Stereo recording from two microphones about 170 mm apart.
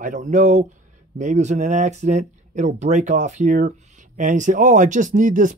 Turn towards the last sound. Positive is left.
turn(degrees=-50)  # may be behind; listen again after turning